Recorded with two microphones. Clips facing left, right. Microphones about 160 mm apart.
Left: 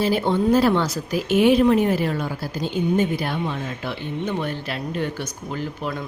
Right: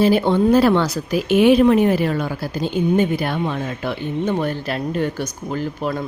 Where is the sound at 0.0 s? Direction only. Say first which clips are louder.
Right 5 dB; 70° right (ahead or behind).